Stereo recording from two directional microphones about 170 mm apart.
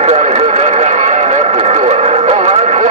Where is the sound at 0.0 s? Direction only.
40° right (ahead or behind).